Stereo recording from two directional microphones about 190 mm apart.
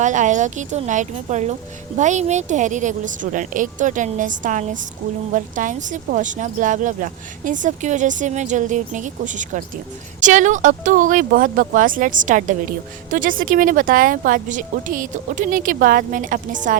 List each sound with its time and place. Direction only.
0.0 s speech: 40° right (ahead or behind)